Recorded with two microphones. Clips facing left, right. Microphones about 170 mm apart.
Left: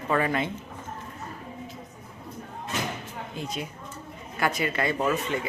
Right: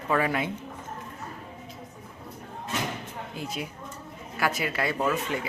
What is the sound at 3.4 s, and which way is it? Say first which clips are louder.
Speech: left 1 dB; 5° right (ahead or behind).